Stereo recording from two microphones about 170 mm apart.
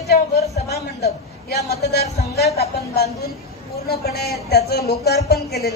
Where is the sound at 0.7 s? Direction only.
70° left (ahead or behind).